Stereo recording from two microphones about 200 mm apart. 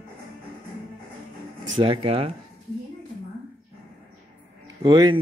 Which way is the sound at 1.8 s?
30° right (ahead or behind).